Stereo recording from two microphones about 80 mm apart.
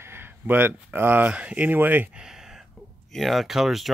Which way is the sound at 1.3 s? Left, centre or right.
Centre.